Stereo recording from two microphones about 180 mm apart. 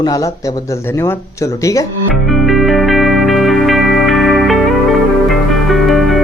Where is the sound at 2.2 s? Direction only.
Centre (ahead or behind).